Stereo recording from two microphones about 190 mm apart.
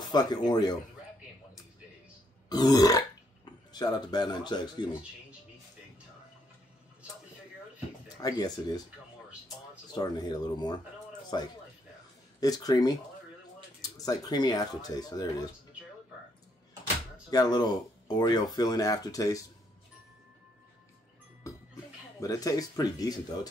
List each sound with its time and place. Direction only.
0.1 s speech: 20° left (ahead or behind)
2.5 s speech: 20° left (ahead or behind)
8.2 s speech: 20° left (ahead or behind)
9.9 s speech: 20° left (ahead or behind)
17.3 s speech: 20° left (ahead or behind)
21.5 s music: 15° left (ahead or behind)
22.2 s speech: 15° left (ahead or behind)